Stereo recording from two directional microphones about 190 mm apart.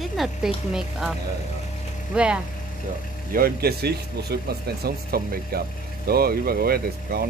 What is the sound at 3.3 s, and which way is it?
Speech, 50° right (ahead or behind).